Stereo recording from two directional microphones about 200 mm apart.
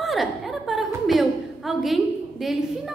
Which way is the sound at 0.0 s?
Centre (ahead or behind).